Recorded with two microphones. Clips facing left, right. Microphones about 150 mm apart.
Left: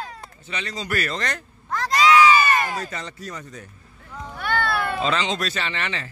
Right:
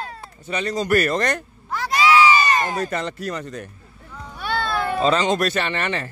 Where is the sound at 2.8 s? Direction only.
60° right (ahead or behind).